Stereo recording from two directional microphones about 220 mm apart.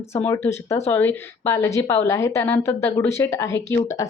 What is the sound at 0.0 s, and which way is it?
Speech, 10° left (ahead or behind).